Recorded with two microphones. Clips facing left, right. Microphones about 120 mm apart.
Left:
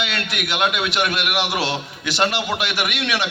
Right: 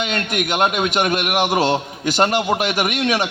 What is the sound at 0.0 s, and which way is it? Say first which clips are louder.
A man's voice: right 4 dB; 45° right (ahead or behind).